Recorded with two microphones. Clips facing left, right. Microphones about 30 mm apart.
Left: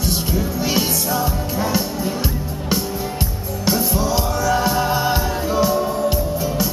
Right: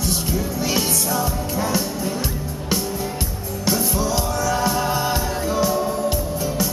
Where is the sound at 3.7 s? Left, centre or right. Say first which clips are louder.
Left 2 dB; centre.